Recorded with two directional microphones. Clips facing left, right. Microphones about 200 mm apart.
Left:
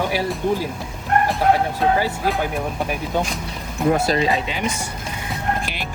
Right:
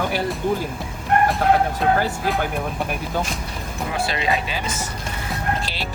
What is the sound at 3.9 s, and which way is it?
Speech, 45° left (ahead or behind).